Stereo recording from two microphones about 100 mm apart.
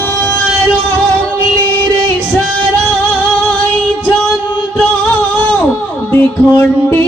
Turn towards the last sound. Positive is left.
turn(degrees=25)  # may be behind; listen again after turning